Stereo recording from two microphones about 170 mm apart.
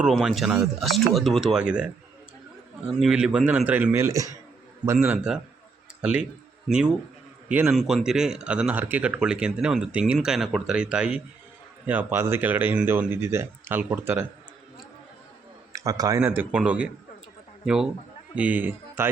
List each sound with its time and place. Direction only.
0.0 s speech: centre (ahead or behind)
3.0 s speech: 5° right (ahead or behind)
15.7 s speech: 20° right (ahead or behind)
18.3 s speech: 10° right (ahead or behind)